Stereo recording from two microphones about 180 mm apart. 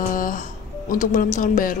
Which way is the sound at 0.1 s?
50° left (ahead or behind).